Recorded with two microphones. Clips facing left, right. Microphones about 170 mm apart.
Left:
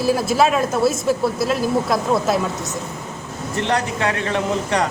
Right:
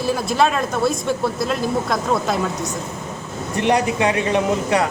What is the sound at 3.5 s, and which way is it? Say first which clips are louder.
Speech: right 3 dB; 15° right (ahead or behind).